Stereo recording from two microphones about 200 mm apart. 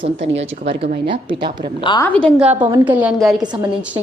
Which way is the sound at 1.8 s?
25° left (ahead or behind).